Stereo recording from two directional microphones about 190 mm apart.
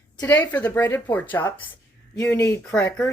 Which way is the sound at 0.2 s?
10° left (ahead or behind).